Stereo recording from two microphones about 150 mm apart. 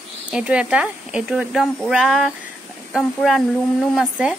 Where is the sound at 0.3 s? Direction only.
5° right (ahead or behind).